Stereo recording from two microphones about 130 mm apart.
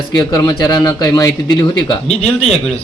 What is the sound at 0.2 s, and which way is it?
A man's voice, 30° left (ahead or behind).